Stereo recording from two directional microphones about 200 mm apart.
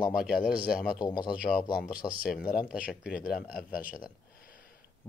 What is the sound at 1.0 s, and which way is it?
Speech, 20° left (ahead or behind).